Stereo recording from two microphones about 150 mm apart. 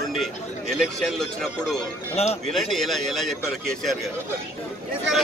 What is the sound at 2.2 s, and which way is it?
Speech, 45° left (ahead or behind).